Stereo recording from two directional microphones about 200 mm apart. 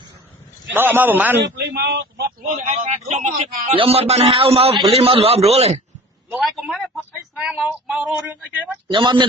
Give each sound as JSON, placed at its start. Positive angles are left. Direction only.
{"t": 0.7, "sound": "a man's voice", "side_deg": -10}
{"t": 1.4, "sound": "speech", "side_deg": -55}
{"t": 2.6, "sound": "a man's voice", "side_deg": -35}
{"t": 6.3, "sound": "speech", "side_deg": 0}
{"t": 8.9, "sound": "speech", "side_deg": -25}